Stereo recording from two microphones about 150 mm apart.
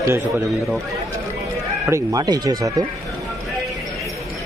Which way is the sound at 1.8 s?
20° right (ahead or behind).